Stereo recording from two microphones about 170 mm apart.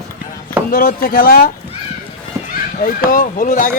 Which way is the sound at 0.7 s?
60° left (ahead or behind).